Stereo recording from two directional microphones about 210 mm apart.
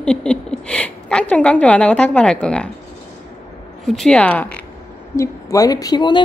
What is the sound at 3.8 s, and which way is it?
Speech, centre (ahead or behind).